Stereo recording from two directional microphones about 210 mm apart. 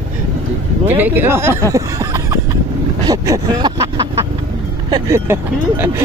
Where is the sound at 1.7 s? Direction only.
15° right (ahead or behind).